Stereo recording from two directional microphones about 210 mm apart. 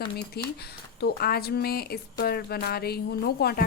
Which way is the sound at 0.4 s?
50° left (ahead or behind).